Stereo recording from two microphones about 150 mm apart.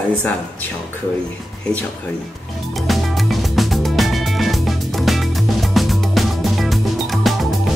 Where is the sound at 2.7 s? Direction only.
Centre (ahead or behind).